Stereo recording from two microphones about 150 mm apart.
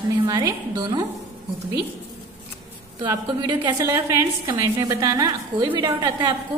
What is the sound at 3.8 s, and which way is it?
A woman's voice, 20° right (ahead or behind).